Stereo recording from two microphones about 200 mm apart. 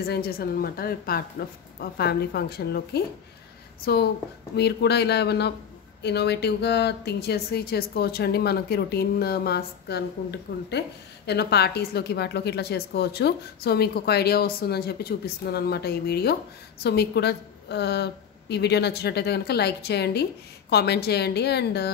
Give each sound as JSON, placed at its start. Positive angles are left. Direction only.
{"t": 0.0, "sound": "a woman's voice", "side_deg": 50}